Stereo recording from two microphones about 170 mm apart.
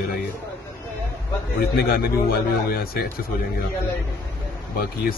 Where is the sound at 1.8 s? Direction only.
60° left (ahead or behind).